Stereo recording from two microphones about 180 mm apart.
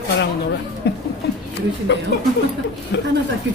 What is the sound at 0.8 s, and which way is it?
Speech, 70° left (ahead or behind).